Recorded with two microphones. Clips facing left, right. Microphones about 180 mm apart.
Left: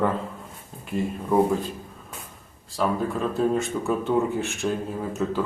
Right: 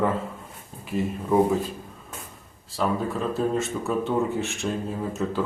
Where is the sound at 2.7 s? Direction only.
Centre (ahead or behind).